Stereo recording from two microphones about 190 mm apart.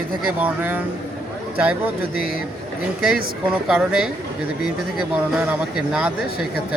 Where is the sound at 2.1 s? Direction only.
50° left (ahead or behind).